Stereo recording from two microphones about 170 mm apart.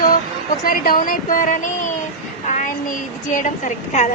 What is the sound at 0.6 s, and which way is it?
Speech, 55° left (ahead or behind).